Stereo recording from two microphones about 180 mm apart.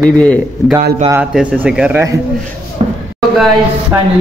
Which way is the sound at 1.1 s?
5° right (ahead or behind).